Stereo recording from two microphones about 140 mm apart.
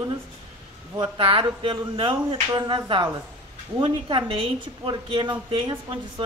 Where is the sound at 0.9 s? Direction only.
40° right (ahead or behind).